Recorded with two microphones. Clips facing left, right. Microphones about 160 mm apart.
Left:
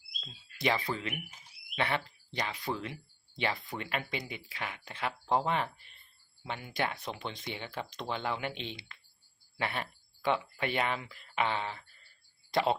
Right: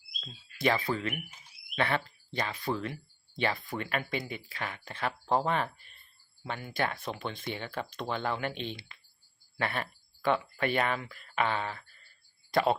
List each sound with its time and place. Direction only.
0.2 s speech: 20° left (ahead or behind)
6.7 s speech: 20° left (ahead or behind)